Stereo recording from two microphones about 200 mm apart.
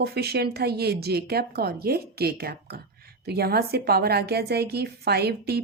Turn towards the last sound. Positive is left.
turn(degrees=-55)  # may be behind; listen again after turning